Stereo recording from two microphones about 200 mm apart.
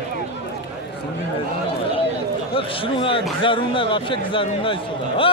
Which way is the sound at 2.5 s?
25° left (ahead or behind).